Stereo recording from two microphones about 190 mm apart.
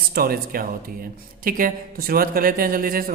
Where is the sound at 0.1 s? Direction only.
50° right (ahead or behind).